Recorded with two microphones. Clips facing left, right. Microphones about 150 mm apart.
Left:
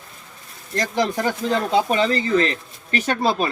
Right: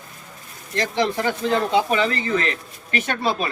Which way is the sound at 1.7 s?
35° left (ahead or behind).